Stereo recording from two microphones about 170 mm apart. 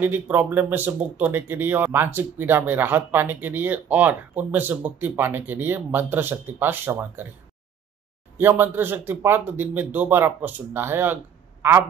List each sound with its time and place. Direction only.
0.0 s speech: 10° right (ahead or behind)
8.4 s speech: 10° right (ahead or behind)